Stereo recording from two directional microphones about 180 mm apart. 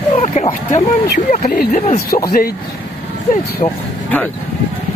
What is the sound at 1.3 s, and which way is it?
Speech, 50° left (ahead or behind).